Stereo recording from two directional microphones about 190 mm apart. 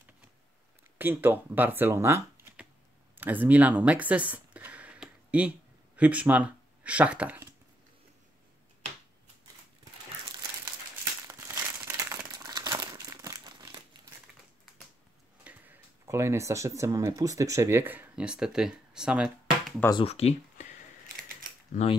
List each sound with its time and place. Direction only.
0.9 s speech: 10° right (ahead or behind)
3.2 s a sound: 10° right (ahead or behind)
5.9 s speech: 5° right (ahead or behind)
11.2 s crumpling: 15° right (ahead or behind)
15.4 s speech: 10° right (ahead or behind)
19.9 s speech: 30° left (ahead or behind)
21.8 s speech: 40° left (ahead or behind)